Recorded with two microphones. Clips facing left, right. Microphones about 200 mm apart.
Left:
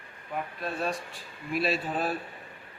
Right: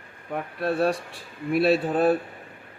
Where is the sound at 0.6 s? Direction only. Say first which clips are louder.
Right 11 dB; 65° right (ahead or behind).